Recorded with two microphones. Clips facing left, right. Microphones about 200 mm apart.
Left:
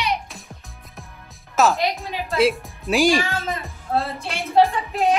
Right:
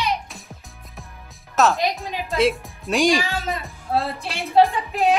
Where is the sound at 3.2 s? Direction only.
15° right (ahead or behind).